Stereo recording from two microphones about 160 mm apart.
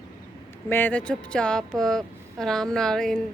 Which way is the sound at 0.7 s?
10° left (ahead or behind).